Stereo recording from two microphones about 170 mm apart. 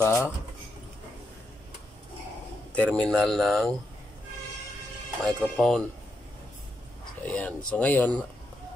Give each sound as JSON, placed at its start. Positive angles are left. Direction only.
{"t": 0.0, "sound": "speech", "side_deg": 15}
{"t": 2.7, "sound": "a man's voice", "side_deg": 5}
{"t": 5.2, "sound": "a man's voice", "side_deg": 5}
{"t": 7.2, "sound": "speech", "side_deg": 10}